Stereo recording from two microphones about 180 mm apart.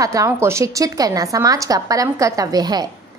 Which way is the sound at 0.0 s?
15° right (ahead or behind).